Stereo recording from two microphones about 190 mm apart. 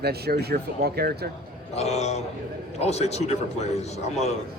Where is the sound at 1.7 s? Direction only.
35° left (ahead or behind).